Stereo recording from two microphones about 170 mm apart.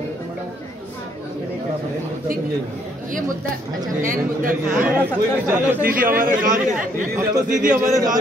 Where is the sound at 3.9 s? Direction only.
50° right (ahead or behind).